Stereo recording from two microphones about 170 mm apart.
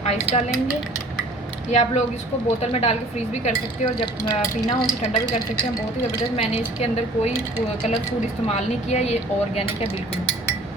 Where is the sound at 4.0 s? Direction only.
20° left (ahead or behind).